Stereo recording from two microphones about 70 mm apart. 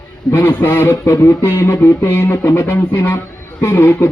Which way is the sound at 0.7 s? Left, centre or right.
Left.